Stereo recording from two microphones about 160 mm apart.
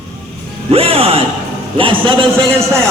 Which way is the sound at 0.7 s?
40° right (ahead or behind).